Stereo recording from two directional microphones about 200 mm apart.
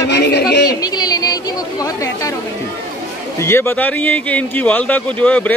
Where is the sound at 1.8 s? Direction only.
15° left (ahead or behind).